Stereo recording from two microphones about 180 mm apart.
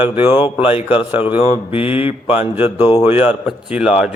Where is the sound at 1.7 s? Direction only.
30° left (ahead or behind).